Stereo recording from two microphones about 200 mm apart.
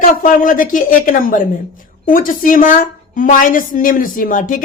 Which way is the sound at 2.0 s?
45° left (ahead or behind).